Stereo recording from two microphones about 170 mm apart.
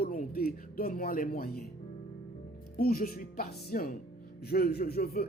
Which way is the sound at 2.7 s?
60° left (ahead or behind).